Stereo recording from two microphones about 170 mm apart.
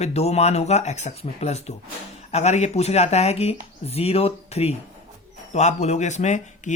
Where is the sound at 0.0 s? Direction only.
40° left (ahead or behind).